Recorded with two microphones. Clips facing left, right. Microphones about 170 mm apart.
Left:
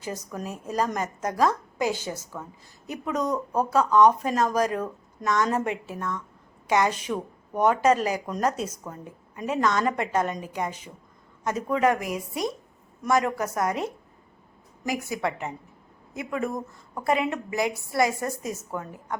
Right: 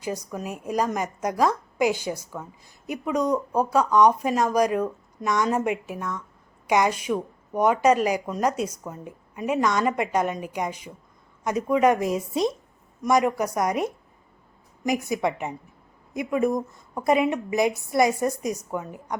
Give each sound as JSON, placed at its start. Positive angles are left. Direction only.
{"t": 0.0, "sound": "a woman's voice", "side_deg": -10}